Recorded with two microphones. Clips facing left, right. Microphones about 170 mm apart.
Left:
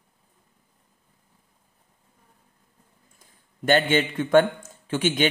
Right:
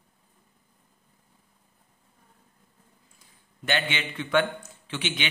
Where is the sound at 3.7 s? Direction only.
45° left (ahead or behind).